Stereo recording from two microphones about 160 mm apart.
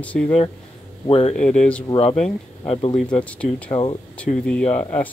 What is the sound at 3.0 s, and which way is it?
Speech, 10° left (ahead or behind).